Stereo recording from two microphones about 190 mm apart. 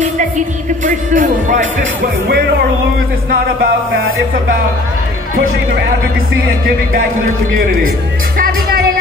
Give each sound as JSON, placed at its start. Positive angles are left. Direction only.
{"t": 0.8, "sound": "speech", "side_deg": -45}
{"t": 2.2, "sound": "music", "side_deg": -55}
{"t": 3.9, "sound": "speech", "side_deg": -50}